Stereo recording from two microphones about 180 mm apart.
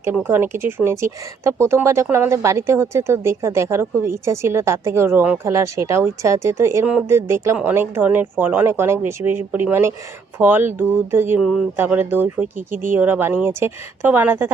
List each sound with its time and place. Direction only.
0.0 s a woman's voice: 10° right (ahead or behind)
12.5 s speech: 45° right (ahead or behind)
12.9 s a woman's voice: 10° right (ahead or behind)